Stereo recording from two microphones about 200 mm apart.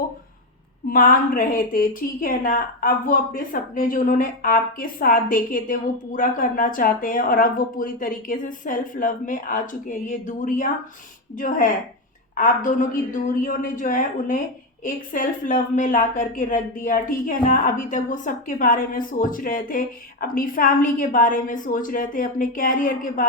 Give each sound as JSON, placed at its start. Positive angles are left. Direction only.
{"t": 0.9, "sound": "a woman's voice", "side_deg": 45}